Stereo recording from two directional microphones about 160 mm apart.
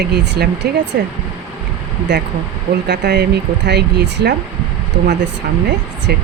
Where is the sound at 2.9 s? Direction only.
90° right.